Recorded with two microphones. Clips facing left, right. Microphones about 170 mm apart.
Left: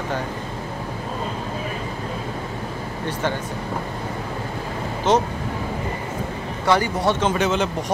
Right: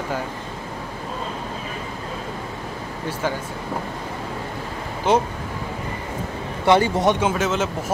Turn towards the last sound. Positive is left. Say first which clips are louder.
# left 1 dB
turn(degrees=0)  # may be behind; listen again after turning